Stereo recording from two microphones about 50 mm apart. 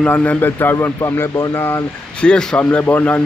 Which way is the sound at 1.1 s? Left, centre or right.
Left.